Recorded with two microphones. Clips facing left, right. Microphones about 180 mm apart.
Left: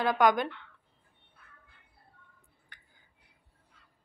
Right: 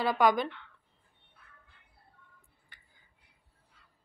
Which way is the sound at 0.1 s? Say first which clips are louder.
Left 1 dB; 5° right (ahead or behind).